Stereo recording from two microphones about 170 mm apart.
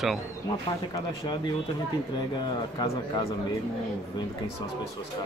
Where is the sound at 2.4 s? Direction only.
25° left (ahead or behind).